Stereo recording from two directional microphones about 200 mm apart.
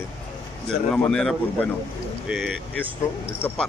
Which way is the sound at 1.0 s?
5° left (ahead or behind).